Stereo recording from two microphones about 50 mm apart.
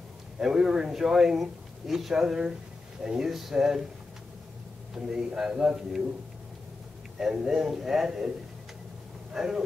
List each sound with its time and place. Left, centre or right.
0.4 s a man's voice: centre
4.9 s a man's voice: centre
7.2 s a man's voice: centre
9.3 s speech: centre